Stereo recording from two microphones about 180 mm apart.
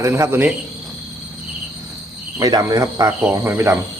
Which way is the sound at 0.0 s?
15° right (ahead or behind).